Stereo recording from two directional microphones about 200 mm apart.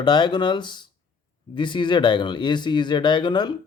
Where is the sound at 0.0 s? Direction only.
20° left (ahead or behind).